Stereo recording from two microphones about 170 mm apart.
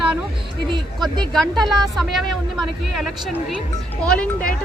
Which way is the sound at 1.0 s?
Centre (ahead or behind).